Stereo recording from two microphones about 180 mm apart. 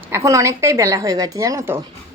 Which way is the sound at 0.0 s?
15° right (ahead or behind).